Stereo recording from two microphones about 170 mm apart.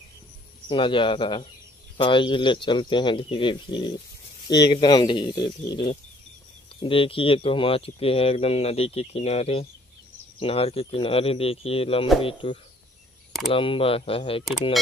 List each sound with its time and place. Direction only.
0.7 s speech: 30° left (ahead or behind)